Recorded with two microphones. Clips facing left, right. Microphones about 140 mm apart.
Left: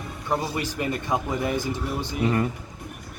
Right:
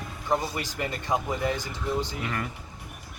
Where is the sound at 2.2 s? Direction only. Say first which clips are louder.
Left 9 dB; 25° left (ahead or behind).